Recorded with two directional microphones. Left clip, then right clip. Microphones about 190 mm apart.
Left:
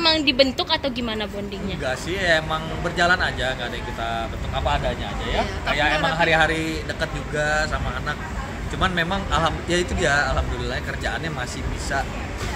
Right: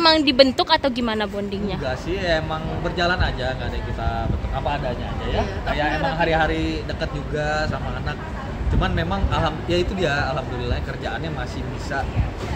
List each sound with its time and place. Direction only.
0.0 s a woman's voice: 35° right (ahead or behind)
1.9 s speech: 5° right (ahead or behind)
5.3 s a man's voice: 5° right (ahead or behind)
8.8 s a man's voice: 5° right (ahead or behind)